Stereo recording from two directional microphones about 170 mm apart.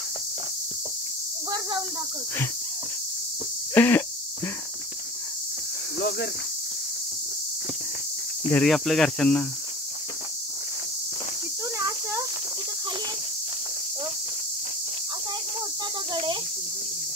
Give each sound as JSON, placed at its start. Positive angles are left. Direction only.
{"t": 3.7, "sound": "speech", "side_deg": 10}
{"t": 5.9, "sound": "cricket", "side_deg": 90}
{"t": 8.6, "sound": "speech", "side_deg": 0}
{"t": 16.1, "sound": "cricket", "side_deg": -30}